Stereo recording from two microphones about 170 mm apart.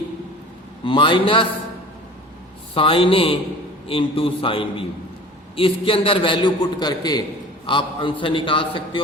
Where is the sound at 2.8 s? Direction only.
30° left (ahead or behind).